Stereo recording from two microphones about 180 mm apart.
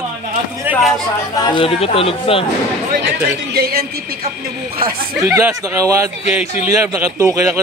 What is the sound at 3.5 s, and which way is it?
Speech, 60° right (ahead or behind).